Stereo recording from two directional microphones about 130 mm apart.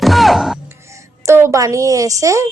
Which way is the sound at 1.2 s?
20° right (ahead or behind).